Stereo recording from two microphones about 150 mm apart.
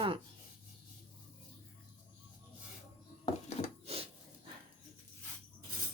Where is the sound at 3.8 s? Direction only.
40° right (ahead or behind).